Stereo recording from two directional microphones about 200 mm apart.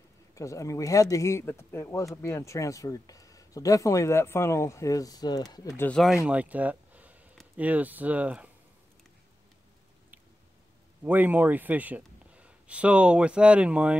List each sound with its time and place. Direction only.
0.3 s speech: 15° left (ahead or behind)
5.9 s speech: centre (ahead or behind)
11.1 s speech: 10° right (ahead or behind)